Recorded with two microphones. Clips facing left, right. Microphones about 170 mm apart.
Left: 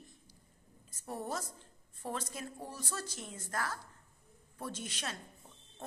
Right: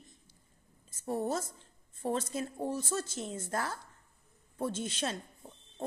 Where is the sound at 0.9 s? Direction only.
25° right (ahead or behind).